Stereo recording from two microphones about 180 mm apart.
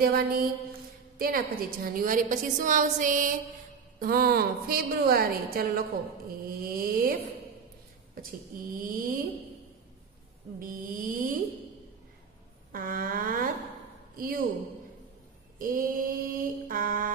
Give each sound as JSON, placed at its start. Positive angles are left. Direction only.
{"t": 0.0, "sound": "a woman's voice", "side_deg": -55}
{"t": 8.7, "sound": "a woman's voice", "side_deg": -50}
{"t": 10.6, "sound": "a woman's voice", "side_deg": -50}
{"t": 12.7, "sound": "a woman's voice", "side_deg": -50}
{"t": 15.6, "sound": "a woman's voice", "side_deg": -50}